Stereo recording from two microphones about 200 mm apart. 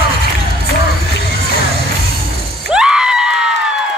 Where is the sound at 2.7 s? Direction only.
5° right (ahead or behind).